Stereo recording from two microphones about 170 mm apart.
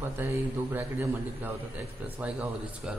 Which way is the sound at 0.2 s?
10° right (ahead or behind).